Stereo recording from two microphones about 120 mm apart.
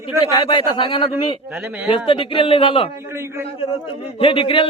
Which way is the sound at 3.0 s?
20° right (ahead or behind).